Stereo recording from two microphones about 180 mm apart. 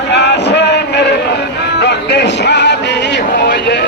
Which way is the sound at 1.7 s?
70° left (ahead or behind).